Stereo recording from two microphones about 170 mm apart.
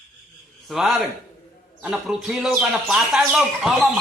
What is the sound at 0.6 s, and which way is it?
Speech, centre (ahead or behind).